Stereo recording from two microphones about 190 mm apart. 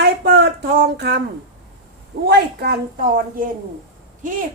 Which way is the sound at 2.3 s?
55° right (ahead or behind).